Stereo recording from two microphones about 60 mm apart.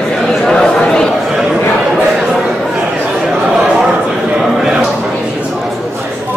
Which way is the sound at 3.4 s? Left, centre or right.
Centre.